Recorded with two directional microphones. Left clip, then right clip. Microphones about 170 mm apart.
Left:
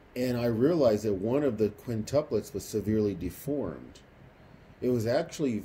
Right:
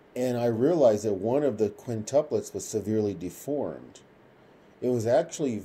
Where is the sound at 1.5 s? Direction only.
80° left.